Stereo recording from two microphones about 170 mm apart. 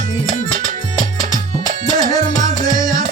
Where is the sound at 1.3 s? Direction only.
45° left (ahead or behind).